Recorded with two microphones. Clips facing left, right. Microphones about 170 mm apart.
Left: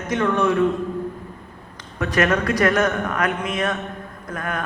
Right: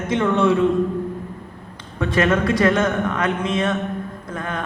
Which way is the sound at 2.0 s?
25° right (ahead or behind).